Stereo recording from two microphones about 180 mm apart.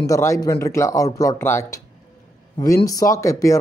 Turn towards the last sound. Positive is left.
turn(degrees=15)  # may be behind; listen again after turning